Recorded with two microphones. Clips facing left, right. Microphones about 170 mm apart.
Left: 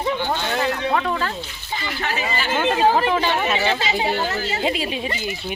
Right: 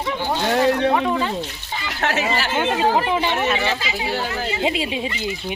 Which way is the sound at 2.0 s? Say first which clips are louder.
Right 5 dB; 75° right (ahead or behind).